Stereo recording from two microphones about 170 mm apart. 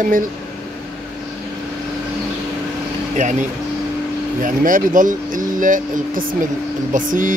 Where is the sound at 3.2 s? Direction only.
45° right (ahead or behind).